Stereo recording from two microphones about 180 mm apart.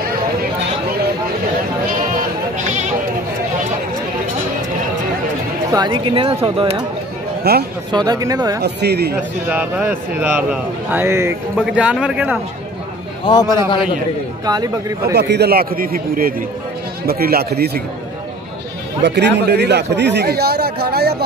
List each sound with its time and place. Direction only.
1.9 s sheep: 50° right (ahead or behind)
5.7 s speech: 25° right (ahead or behind)
7.5 s a man's voice: 60° right (ahead or behind)
7.9 s speech: 25° right (ahead or behind)
8.6 s a man's voice: 65° right (ahead or behind)
9.5 s a man's voice: 10° right (ahead or behind)
11.5 s a man's voice: 5° right (ahead or behind)
13.2 s a man's voice: 25° left (ahead or behind)
14.4 s speech: 20° right (ahead or behind)
15.1 s a man's voice: 65° right (ahead or behind)
19.0 s a man's voice: 70° right (ahead or behind)